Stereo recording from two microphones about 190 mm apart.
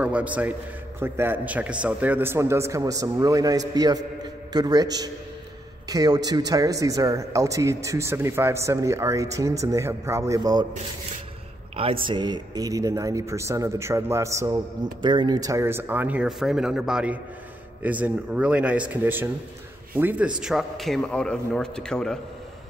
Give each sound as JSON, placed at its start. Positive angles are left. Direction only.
{"t": 0.0, "sound": "speech", "side_deg": -5}
{"t": 5.9, "sound": "speech", "side_deg": -20}
{"t": 11.7, "sound": "a man's voice", "side_deg": -30}